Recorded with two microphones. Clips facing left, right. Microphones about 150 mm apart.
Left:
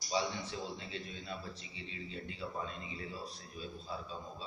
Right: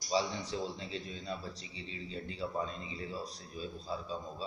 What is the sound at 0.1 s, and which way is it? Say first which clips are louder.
A man's voice: right 3 dB; 35° right (ahead or behind).